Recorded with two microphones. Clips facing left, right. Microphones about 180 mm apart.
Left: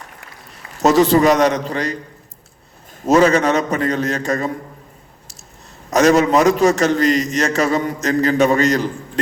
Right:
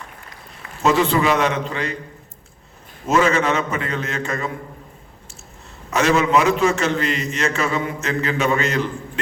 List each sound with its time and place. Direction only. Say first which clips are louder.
0.8 s a man's voice: left 5 dB; 40° left (ahead or behind)
3.1 s a man's voice: left 5 dB; 40° left (ahead or behind)
5.9 s a man's voice: left 4 dB; 40° left (ahead or behind)